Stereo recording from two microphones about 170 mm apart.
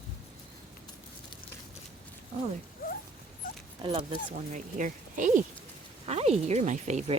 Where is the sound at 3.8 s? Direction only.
35° right (ahead or behind).